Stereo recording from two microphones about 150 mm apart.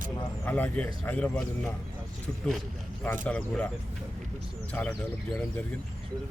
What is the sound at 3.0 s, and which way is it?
Speech, 10° left (ahead or behind).